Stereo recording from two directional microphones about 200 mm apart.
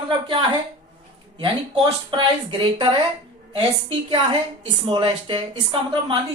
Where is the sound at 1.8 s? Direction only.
25° right (ahead or behind).